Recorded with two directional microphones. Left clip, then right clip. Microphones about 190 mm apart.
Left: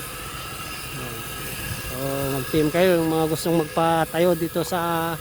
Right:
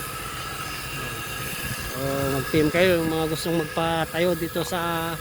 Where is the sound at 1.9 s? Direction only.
30° left (ahead or behind).